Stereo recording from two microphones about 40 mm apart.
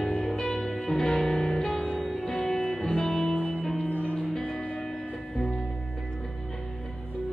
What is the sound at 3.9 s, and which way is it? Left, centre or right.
Music, left.